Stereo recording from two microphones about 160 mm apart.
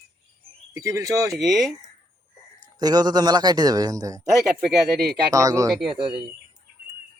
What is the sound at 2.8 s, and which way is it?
A man's voice, 25° right (ahead or behind).